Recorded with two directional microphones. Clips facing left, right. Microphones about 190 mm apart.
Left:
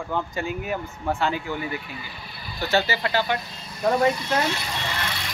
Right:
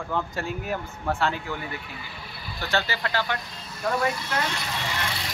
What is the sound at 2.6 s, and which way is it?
Speech, 10° left (ahead or behind).